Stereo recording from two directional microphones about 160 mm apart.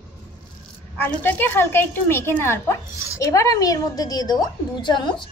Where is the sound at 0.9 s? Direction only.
10° left (ahead or behind).